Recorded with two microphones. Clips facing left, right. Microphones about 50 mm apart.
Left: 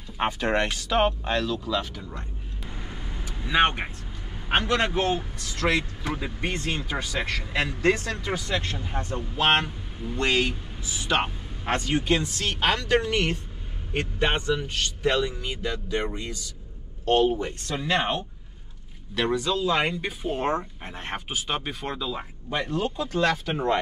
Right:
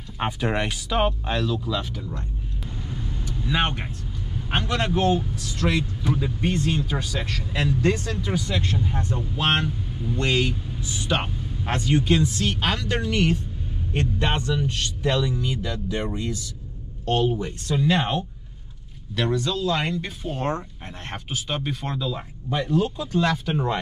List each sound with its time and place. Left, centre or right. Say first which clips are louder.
0.2 s speech: left 1 dB; centre
2.0 s speech: right 3 dB; centre
2.9 s vehicle: right 5 dB; left
4.4 s speech: left 2 dB; centre
6.1 s speech: right 5 dB; centre
11.8 s speech: right 6 dB; left
12.4 s speech: even; centre
12.7 s speech: left 2 dB; left
13.9 s a man's voice: even; centre
17.4 s speech: right 4 dB; left
17.8 s speech: right 1 dB; centre